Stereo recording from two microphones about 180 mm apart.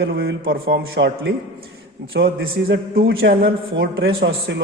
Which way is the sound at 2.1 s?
60° right (ahead or behind).